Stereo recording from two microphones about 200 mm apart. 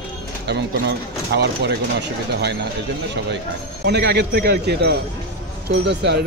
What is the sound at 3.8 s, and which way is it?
Speech, 55° right (ahead or behind).